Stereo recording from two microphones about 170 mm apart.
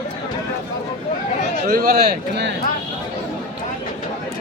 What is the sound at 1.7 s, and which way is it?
Speech, 60° right (ahead or behind).